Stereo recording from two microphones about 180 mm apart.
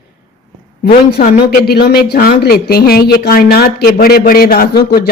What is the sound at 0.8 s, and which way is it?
A woman's voice, 55° left (ahead or behind).